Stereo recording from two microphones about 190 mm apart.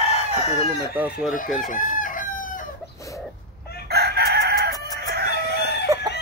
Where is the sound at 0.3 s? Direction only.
30° left (ahead or behind).